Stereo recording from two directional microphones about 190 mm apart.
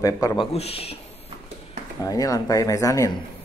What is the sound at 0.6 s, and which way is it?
Speech, 30° left (ahead or behind).